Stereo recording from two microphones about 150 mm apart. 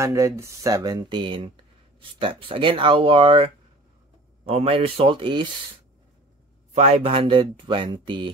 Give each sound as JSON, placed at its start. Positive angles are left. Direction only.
{"t": 0.0, "sound": "speech", "side_deg": -20}
{"t": 6.7, "sound": "speech", "side_deg": -45}